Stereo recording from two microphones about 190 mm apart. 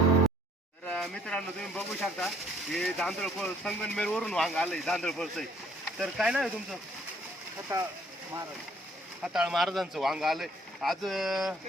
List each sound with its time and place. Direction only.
0.9 s speech: centre (ahead or behind)
7.7 s speech: 15° right (ahead or behind)
9.2 s speech: 5° right (ahead or behind)